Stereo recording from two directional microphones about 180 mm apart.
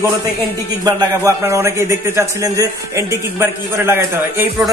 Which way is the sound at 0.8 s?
15° right (ahead or behind).